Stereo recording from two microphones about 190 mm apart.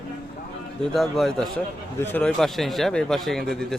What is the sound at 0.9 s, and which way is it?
A man's voice, centre (ahead or behind).